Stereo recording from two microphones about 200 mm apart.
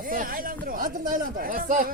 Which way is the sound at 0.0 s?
45° right (ahead or behind).